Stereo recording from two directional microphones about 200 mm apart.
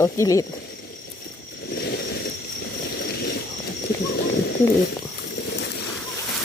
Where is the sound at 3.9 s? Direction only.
50° left (ahead or behind).